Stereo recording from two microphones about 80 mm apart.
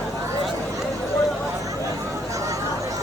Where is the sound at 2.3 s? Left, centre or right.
Right.